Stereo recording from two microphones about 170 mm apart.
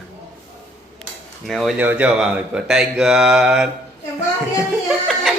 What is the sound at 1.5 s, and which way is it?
Speech, centre (ahead or behind).